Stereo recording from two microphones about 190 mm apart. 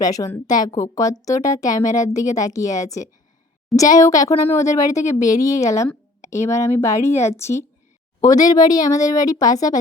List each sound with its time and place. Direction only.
0.0 s speech: 20° left (ahead or behind)